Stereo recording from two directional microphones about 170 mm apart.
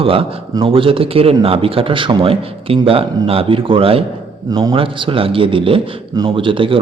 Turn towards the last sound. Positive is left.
turn(degrees=-30)  # may be behind; listen again after turning